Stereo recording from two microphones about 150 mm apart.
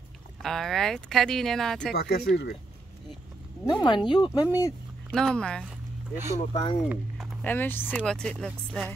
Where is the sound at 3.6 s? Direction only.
30° left (ahead or behind).